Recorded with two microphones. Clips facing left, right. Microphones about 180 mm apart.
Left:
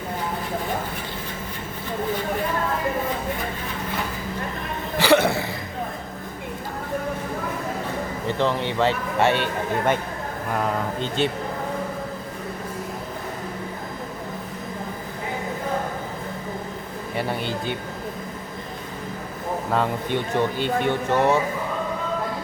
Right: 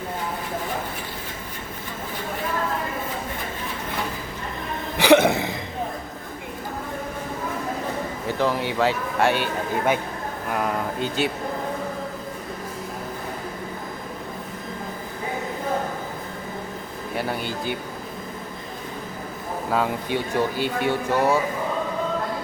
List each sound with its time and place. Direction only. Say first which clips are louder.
4.9 s a sound: right 2 dB; 20° right (ahead or behind)
8.3 s speech: even; 5° right (ahead or behind)
17.2 s speech: left 1 dB; centre (ahead or behind)
19.7 s speech: even; 5° right (ahead or behind)